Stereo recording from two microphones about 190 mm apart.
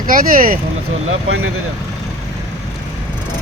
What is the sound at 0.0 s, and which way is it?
Speech, 45° right (ahead or behind).